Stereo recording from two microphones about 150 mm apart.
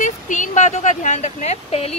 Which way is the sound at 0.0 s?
55° left (ahead or behind).